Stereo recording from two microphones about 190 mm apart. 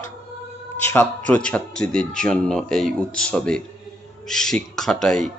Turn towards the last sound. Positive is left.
turn(degrees=0)  # may be behind; listen again after turning